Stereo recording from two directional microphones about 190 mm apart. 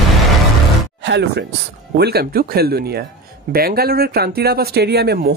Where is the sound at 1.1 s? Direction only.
65° right (ahead or behind).